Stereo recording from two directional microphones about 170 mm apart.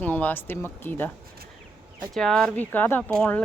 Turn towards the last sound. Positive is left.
turn(degrees=5)  # may be behind; listen again after turning